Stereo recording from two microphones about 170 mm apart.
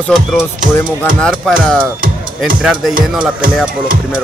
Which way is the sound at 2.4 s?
Centre (ahead or behind).